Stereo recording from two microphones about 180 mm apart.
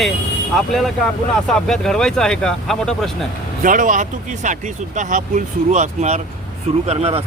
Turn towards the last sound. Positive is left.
turn(degrees=-35)  # may be behind; listen again after turning